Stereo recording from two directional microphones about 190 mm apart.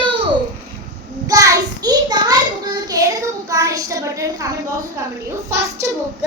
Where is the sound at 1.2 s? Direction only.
15° right (ahead or behind).